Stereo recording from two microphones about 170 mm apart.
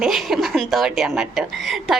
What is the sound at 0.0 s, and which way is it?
A woman's voice, centre (ahead or behind).